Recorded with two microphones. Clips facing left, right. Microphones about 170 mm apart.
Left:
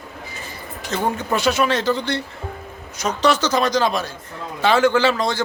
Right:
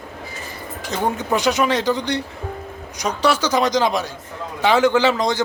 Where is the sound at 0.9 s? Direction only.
15° right (ahead or behind).